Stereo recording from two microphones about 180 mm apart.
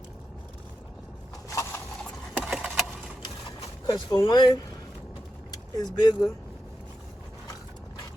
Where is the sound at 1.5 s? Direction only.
15° left (ahead or behind).